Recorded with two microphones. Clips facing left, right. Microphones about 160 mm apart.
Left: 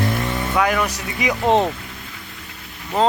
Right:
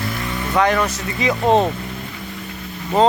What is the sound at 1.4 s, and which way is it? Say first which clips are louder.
Speech: right 1 dB; 15° right (ahead or behind).